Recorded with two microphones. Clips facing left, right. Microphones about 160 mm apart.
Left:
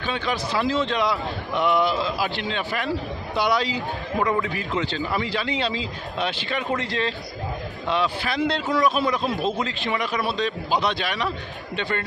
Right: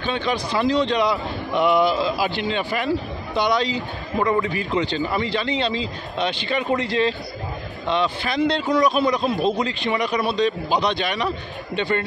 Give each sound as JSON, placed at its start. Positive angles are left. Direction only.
{"t": 0.0, "sound": "speech", "side_deg": 0}